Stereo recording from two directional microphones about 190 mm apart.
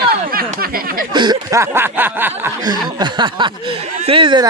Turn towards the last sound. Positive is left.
turn(degrees=-25)  # may be behind; listen again after turning